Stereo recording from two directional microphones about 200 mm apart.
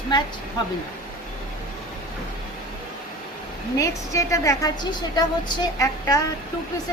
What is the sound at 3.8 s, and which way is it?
A woman's voice, 15° left (ahead or behind).